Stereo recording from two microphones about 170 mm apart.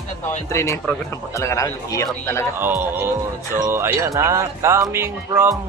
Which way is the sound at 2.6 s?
15° right (ahead or behind).